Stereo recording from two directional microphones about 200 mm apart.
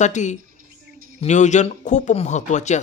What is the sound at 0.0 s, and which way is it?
Speech, 35° left (ahead or behind).